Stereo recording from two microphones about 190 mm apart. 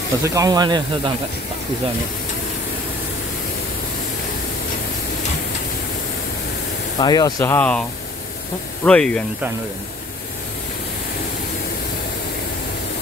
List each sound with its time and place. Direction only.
0.2 s speech: 15° right (ahead or behind)
7.0 s speech: 20° left (ahead or behind)
8.8 s speech: 5° left (ahead or behind)